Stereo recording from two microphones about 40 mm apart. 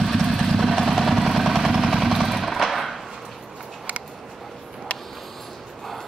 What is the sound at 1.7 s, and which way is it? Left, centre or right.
Jackhammer, centre.